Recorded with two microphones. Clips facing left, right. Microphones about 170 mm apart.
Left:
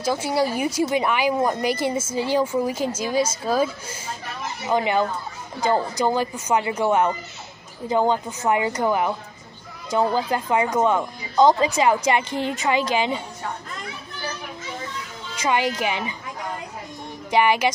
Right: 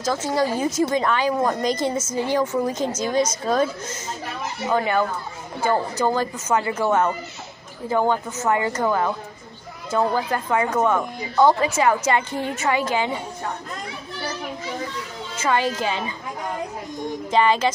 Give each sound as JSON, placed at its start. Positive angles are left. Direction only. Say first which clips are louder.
{"t": 0.0, "sound": "speech", "louder": "even", "side_deg": 10}
{"t": 15.4, "sound": "speech", "louder": "even", "side_deg": 15}
{"t": 17.3, "sound": "speech", "louder": "even", "side_deg": 15}